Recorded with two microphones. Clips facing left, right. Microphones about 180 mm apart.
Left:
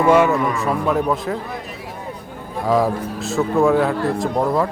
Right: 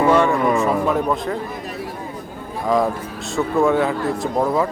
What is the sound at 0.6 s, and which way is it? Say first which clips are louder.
Speech: right 1 dB; centre (ahead or behind).